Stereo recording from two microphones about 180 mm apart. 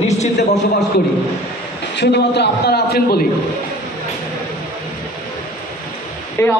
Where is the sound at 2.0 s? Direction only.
70° left (ahead or behind).